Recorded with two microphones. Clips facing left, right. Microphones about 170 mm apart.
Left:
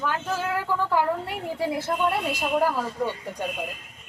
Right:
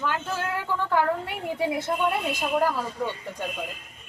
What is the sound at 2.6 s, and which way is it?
Speech, 10° left (ahead or behind).